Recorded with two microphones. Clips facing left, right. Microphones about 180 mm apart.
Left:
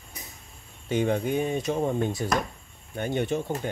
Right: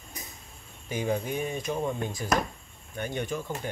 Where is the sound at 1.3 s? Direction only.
30° left (ahead or behind).